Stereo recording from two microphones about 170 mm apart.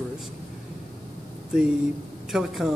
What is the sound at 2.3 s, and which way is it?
Speech, 5° right (ahead or behind).